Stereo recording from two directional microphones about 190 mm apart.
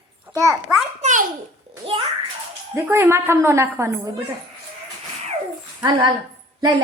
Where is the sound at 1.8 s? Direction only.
25° right (ahead or behind).